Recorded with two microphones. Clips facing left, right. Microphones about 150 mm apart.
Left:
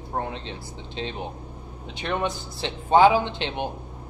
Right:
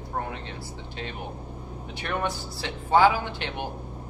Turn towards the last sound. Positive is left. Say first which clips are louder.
# left 4 dB
turn(degrees=20)  # may be behind; listen again after turning